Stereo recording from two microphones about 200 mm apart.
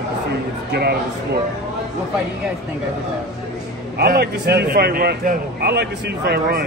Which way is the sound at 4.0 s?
50° right (ahead or behind).